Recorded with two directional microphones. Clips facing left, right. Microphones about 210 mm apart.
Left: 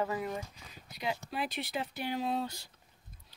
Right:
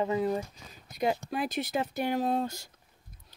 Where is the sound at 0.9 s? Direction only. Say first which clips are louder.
Right 7 dB; 45° right (ahead or behind).